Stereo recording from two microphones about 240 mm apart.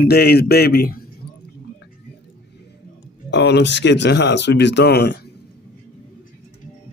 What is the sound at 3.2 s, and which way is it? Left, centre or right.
A man's voice, left.